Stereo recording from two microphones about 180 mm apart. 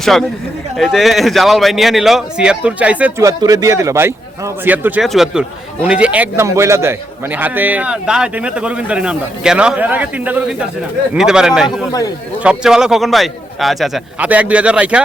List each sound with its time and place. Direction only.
0.0 s a man's voice: centre (ahead or behind)
3.2 s a man's voice: 20° right (ahead or behind); by 11.9 s 5° right (ahead or behind)
11.9 s a man's voice: 20° left (ahead or behind)
12.4 s a man's voice: 5° right (ahead or behind)